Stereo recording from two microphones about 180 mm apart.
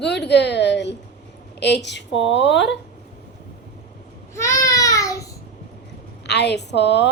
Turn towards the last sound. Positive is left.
turn(degrees=70)  # may be behind; listen again after turning